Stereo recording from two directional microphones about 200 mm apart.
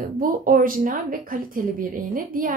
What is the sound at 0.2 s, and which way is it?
Speech, 45° right (ahead or behind).